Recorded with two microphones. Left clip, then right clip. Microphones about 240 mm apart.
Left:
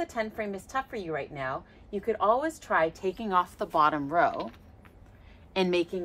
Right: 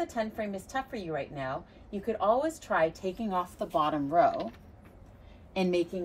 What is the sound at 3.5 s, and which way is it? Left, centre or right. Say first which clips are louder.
Speech: left 4 dB; left.